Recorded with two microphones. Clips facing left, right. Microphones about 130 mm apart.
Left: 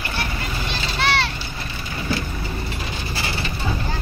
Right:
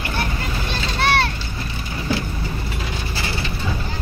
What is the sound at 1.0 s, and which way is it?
Vehicle, 50° right (ahead or behind).